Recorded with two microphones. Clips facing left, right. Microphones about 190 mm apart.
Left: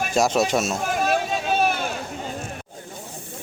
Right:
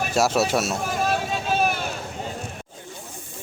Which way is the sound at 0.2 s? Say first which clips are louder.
Left 1 dB; 5° right (ahead or behind).